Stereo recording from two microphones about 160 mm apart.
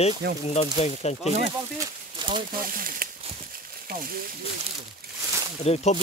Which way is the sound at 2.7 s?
60° right (ahead or behind).